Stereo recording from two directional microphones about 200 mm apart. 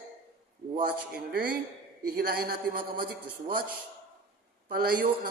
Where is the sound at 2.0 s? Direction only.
50° right (ahead or behind).